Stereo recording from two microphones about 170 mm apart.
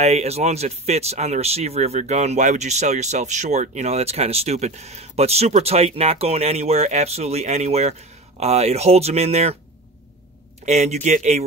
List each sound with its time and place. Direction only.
0.0 s speech: 40° right (ahead or behind)
10.6 s speech: 40° right (ahead or behind)